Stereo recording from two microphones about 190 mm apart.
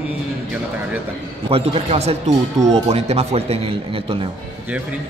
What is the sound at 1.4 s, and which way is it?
A man's voice, 30° right (ahead or behind).